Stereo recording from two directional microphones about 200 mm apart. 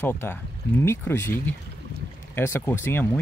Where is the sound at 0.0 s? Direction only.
10° left (ahead or behind).